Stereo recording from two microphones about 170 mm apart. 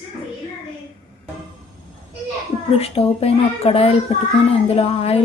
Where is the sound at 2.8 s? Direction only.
35° left (ahead or behind).